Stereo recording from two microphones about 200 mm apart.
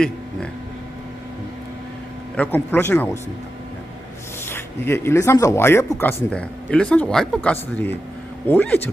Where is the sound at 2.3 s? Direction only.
10° left (ahead or behind).